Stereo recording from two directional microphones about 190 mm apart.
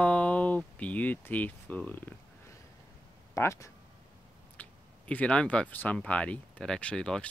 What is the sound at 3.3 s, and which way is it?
Speech, 15° left (ahead or behind).